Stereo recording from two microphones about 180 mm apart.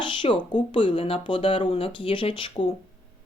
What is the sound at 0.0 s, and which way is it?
Speech, 25° left (ahead or behind).